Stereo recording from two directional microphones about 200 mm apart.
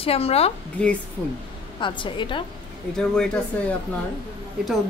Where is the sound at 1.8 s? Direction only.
25° left (ahead or behind).